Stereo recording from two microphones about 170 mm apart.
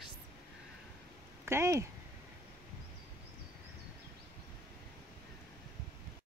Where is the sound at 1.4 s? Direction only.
15° right (ahead or behind).